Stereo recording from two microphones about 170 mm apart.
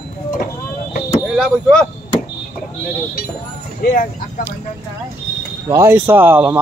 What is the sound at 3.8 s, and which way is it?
Speech, 55° left (ahead or behind).